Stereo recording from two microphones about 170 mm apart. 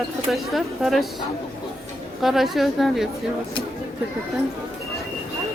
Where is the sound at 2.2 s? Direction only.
Centre (ahead or behind).